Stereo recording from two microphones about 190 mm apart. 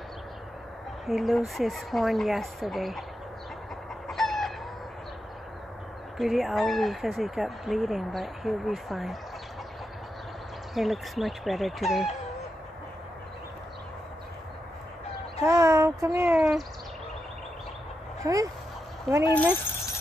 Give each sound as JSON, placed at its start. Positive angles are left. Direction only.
{"t": 1.0, "sound": "speech", "side_deg": 0}
{"t": 4.1, "sound": "chicken", "side_deg": 0}
{"t": 6.1, "sound": "speech", "side_deg": 0}
{"t": 10.7, "sound": "speech", "side_deg": 0}
{"t": 15.4, "sound": "a child's voice", "side_deg": -15}
{"t": 18.2, "sound": "a child's voice", "side_deg": -20}